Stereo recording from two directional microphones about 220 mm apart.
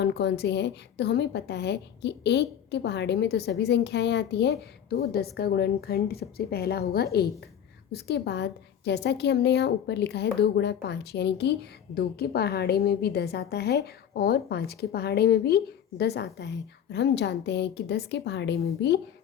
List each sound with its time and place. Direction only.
0.0 s a woman's voice: 50° left (ahead or behind)